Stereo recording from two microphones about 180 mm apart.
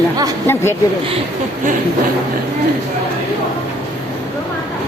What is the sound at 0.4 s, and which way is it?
Speech, 15° left (ahead or behind).